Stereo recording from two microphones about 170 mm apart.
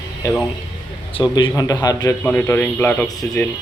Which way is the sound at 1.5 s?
20° left (ahead or behind).